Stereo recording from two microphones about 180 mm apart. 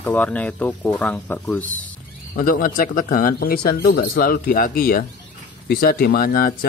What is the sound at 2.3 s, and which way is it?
Speech, 50° left (ahead or behind).